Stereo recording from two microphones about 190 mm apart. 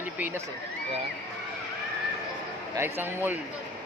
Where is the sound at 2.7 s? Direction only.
10° right (ahead or behind).